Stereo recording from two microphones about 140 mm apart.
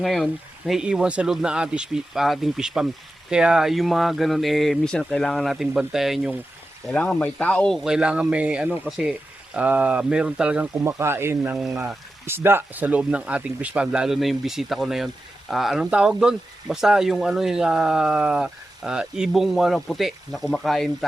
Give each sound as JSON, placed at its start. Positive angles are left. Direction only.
{"t": 0.0, "sound": "speech", "side_deg": 0}
{"t": 6.9, "sound": "speech", "side_deg": 10}
{"t": 7.9, "sound": "speech", "side_deg": -5}
{"t": 10.8, "sound": "speech", "side_deg": -20}
{"t": 11.5, "sound": "speech", "side_deg": -5}
{"t": 12.2, "sound": "speech", "side_deg": -15}